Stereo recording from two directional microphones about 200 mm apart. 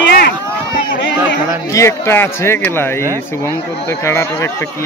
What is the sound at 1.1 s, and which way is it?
Chatter, 5° right (ahead or behind).